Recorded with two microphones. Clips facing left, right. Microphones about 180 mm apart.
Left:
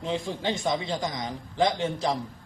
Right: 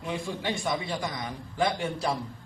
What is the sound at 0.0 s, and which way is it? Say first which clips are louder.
A man's voice: left 3 dB; 25° left (ahead or behind).